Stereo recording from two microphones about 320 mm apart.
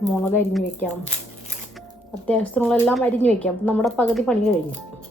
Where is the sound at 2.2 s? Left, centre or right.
Centre.